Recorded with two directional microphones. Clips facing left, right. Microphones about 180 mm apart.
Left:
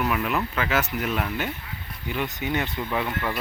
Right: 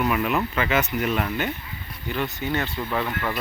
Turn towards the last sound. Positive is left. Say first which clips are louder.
# right 1 dB
turn(degrees=5)  # may be behind; listen again after turning